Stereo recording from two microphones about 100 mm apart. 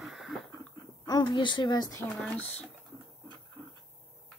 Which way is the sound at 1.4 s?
50° left (ahead or behind).